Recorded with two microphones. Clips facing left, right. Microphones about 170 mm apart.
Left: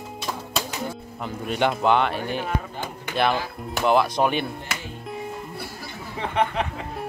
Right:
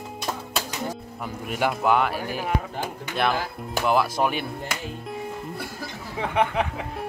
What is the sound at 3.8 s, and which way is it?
Speech, 5° right (ahead or behind).